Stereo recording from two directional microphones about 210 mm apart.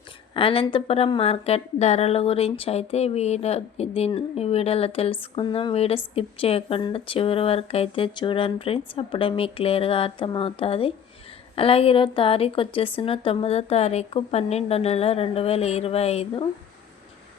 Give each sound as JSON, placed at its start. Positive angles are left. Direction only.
{"t": 0.3, "sound": "a woman's voice", "side_deg": 25}